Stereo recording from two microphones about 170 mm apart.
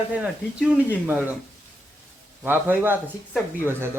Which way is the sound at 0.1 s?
5° right (ahead or behind).